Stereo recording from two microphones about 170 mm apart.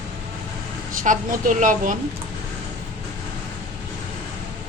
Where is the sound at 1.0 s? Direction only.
50° right (ahead or behind).